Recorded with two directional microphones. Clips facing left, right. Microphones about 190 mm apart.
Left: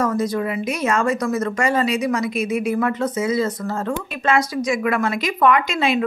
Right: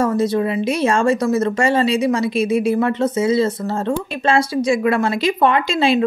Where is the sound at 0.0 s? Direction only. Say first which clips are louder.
Right 4 dB; 25° right (ahead or behind).